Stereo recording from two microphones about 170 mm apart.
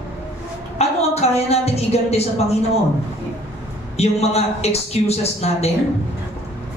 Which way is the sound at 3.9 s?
40° left (ahead or behind).